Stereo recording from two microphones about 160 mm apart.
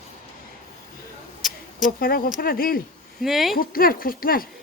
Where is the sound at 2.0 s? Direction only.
65° left (ahead or behind).